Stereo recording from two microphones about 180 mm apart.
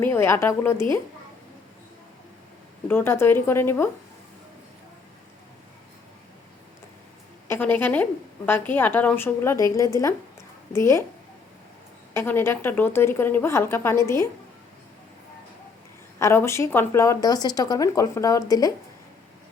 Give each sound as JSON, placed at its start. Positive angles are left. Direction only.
{"t": 0.0, "sound": "a woman's voice", "side_deg": 10}
{"t": 2.8, "sound": "a woman's voice", "side_deg": 10}
{"t": 7.4, "sound": "a woman's voice", "side_deg": 10}
{"t": 12.1, "sound": "a woman's voice", "side_deg": 10}
{"t": 16.1, "sound": "speech", "side_deg": 15}